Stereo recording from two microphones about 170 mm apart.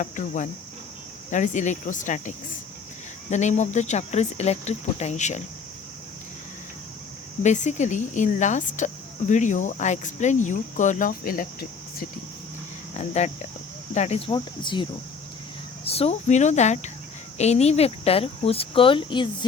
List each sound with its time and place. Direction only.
0.0 s speech: 45° left (ahead or behind)
7.4 s speech: 45° left (ahead or behind)
13.0 s speech: 40° left (ahead or behind)
14.3 s speech: 25° left (ahead or behind)